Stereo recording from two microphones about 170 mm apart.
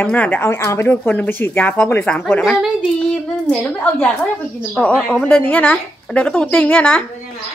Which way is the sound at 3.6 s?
10° left (ahead or behind).